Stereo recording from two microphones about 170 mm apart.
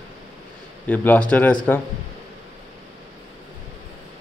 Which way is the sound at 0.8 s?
10° left (ahead or behind).